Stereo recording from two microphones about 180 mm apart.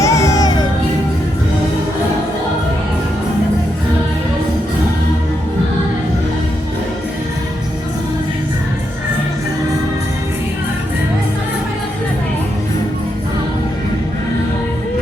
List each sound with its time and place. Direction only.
0.0 s music: 15° left (ahead or behind)